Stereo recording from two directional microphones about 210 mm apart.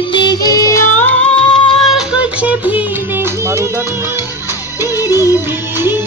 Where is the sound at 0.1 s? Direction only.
20° left (ahead or behind).